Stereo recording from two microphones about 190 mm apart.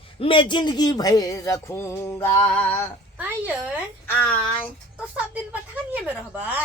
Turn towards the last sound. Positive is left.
turn(degrees=-10)  # may be behind; listen again after turning